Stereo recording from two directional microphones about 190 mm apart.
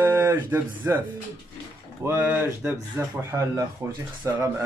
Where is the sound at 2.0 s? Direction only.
10° right (ahead or behind).